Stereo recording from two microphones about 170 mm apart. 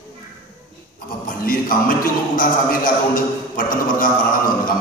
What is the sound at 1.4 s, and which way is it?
A man's voice, 55° left (ahead or behind).